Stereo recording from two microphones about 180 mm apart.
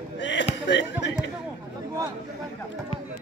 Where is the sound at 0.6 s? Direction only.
75° left (ahead or behind).